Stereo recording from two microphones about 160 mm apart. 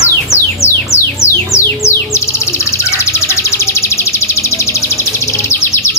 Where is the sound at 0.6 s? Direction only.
15° left (ahead or behind).